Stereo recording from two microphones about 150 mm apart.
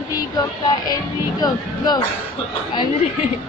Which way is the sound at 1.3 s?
30° left (ahead or behind).